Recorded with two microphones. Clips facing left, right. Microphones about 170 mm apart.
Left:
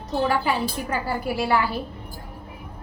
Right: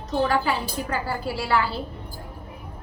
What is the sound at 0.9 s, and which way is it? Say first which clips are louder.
Speech: even; 15° left (ahead or behind).